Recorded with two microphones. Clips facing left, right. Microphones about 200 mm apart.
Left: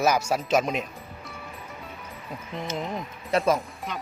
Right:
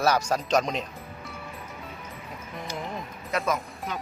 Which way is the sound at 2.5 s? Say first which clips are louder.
Left 4 dB; 25° left (ahead or behind).